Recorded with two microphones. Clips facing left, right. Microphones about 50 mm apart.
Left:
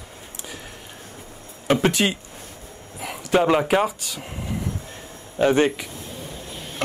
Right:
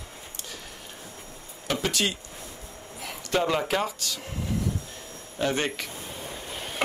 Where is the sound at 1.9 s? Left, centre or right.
Left.